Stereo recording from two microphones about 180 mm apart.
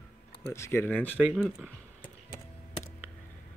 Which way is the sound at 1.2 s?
5° right (ahead or behind).